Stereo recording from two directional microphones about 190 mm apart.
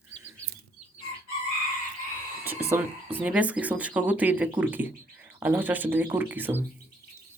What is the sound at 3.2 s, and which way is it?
Speech, 5° right (ahead or behind).